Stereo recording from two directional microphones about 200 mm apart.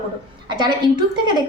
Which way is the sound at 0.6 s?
20° right (ahead or behind).